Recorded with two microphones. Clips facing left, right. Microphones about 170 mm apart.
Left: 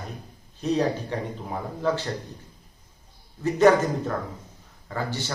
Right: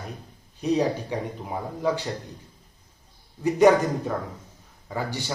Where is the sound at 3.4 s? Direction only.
15° right (ahead or behind).